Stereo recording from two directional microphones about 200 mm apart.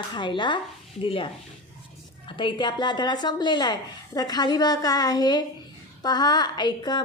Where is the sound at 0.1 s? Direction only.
25° left (ahead or behind).